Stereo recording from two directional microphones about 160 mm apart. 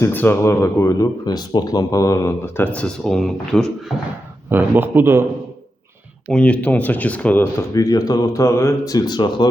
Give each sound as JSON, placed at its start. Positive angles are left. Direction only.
{"t": 0.0, "sound": "speech", "side_deg": 10}
{"t": 4.4, "sound": "a man's voice", "side_deg": -10}
{"t": 6.3, "sound": "speech", "side_deg": 10}
{"t": 7.7, "sound": "speech", "side_deg": 20}